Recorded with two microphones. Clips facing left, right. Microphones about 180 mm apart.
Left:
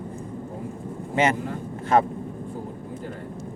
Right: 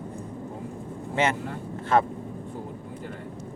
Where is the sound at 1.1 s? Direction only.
15° left (ahead or behind).